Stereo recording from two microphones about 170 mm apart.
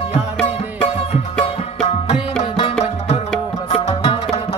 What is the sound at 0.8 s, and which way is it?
Music, 35° left (ahead or behind).